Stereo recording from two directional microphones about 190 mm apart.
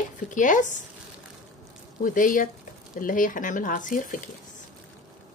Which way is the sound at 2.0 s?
45° left (ahead or behind).